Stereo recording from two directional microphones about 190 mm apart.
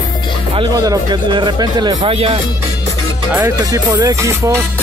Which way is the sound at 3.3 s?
15° right (ahead or behind).